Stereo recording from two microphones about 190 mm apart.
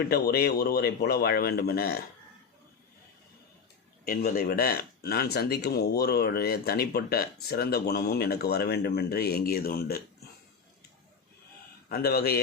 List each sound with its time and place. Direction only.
0.1 s speech: 55° left (ahead or behind)
4.0 s speech: 50° left (ahead or behind)
11.9 s speech: 55° left (ahead or behind)